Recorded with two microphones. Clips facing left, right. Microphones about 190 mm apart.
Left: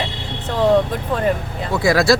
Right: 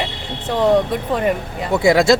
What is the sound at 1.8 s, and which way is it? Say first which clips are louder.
Speech: right 2 dB; 20° right (ahead or behind).